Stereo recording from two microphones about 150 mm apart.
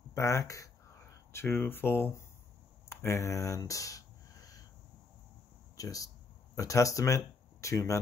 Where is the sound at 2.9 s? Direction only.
15° left (ahead or behind).